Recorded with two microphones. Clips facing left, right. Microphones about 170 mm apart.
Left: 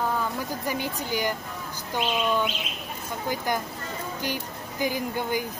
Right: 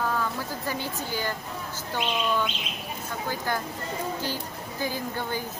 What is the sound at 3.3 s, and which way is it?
Speech, 15° left (ahead or behind).